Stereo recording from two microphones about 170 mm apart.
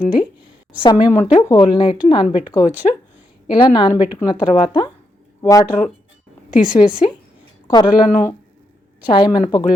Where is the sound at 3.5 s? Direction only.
25° left (ahead or behind).